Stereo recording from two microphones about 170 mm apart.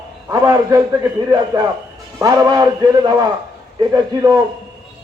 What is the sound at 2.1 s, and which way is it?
A man's voice, 20° right (ahead or behind).